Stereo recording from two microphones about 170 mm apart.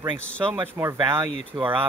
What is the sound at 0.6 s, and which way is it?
Speech, 15° right (ahead or behind).